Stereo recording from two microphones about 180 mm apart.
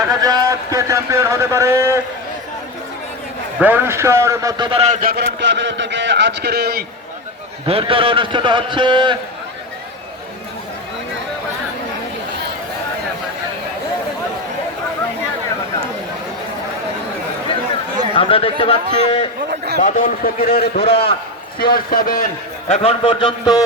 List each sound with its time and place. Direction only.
0.2 s a man's voice: 20° right (ahead or behind)
3.6 s a man's voice: 10° right (ahead or behind); by 6.8 s 60° right (ahead or behind)
7.7 s a man's voice: 30° right (ahead or behind)
18.1 s a man's voice: 30° left (ahead or behind)
19.5 s a sound: 60° right (ahead or behind)
19.8 s a man's voice: 45° left (ahead or behind)
20.6 s a man's voice: 35° left (ahead or behind)
21.6 s a man's voice: 55° left (ahead or behind)
22.7 s a man's voice: 30° left (ahead or behind)